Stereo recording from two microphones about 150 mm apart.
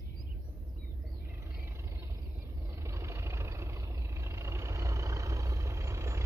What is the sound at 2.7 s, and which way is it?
Vehicle, 20° right (ahead or behind).